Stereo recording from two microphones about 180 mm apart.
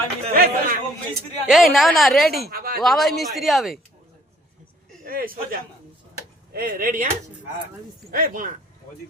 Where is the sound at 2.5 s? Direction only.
55° right (ahead or behind).